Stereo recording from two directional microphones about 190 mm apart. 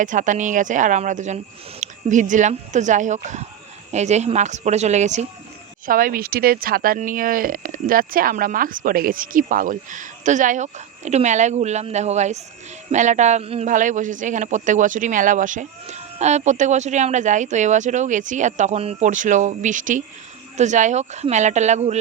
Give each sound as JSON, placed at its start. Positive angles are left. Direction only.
{"t": 0.0, "sound": "a man's voice", "side_deg": -40}
{"t": 5.8, "sound": "a man's voice", "side_deg": -50}